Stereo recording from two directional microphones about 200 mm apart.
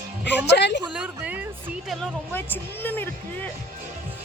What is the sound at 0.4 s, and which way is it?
Speech, 60° left (ahead or behind).